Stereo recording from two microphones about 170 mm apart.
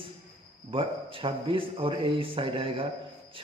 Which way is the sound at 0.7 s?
30° right (ahead or behind).